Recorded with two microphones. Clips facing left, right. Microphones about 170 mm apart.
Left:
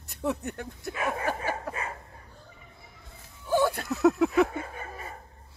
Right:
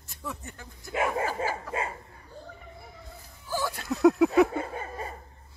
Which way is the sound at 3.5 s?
60° left (ahead or behind).